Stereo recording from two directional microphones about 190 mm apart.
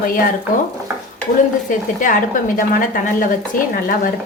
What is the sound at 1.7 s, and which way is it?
A woman's voice, 45° left (ahead or behind).